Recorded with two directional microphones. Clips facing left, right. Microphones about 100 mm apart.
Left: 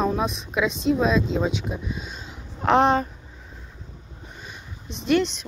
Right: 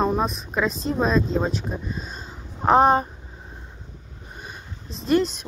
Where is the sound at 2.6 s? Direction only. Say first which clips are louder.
Right 2 dB; 40° right (ahead or behind).